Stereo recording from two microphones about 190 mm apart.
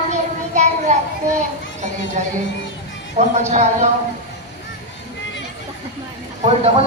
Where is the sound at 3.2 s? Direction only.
40° right (ahead or behind).